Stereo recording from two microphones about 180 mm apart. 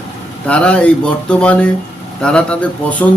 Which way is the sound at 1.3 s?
5° left (ahead or behind).